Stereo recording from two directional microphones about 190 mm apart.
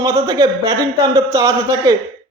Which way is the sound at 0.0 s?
15° right (ahead or behind).